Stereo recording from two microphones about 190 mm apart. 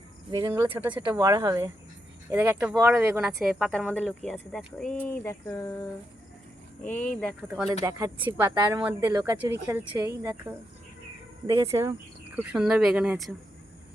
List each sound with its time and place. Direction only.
0.3 s speech: 20° right (ahead or behind)
3.7 s speech: 5° left (ahead or behind)
5.2 s a sound: 15° left (ahead or behind)
7.2 s speech: centre (ahead or behind)
7.9 s speech: 15° right (ahead or behind)